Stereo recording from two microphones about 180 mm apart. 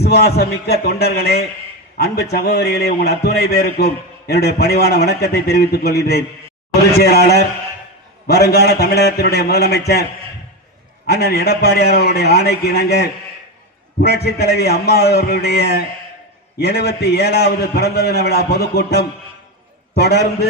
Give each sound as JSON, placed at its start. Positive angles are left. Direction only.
{"t": 0.0, "sound": "a man's voice", "side_deg": 60}